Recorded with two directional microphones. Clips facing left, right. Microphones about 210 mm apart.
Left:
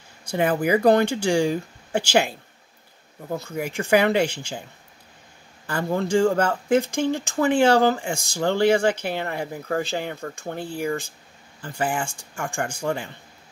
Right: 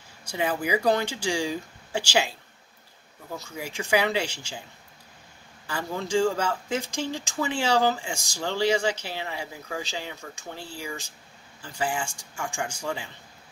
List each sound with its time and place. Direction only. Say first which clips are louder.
0.2 s speech: left 6 dB; 55° left (ahead or behind)
5.7 s speech: left 6 dB; 55° left (ahead or behind)